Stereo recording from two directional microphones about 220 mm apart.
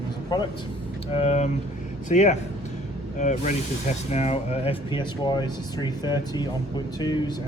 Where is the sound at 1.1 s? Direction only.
30° left (ahead or behind).